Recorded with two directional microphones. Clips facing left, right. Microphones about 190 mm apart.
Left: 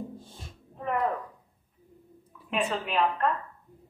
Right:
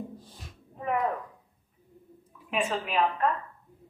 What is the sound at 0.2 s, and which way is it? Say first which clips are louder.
Music: left 2 dB; 25° left (ahead or behind).